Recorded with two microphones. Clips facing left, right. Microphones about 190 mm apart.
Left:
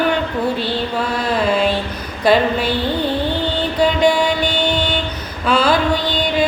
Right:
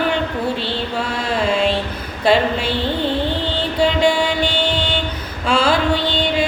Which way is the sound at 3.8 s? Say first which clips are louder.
Left 1 dB; 25° right (ahead or behind).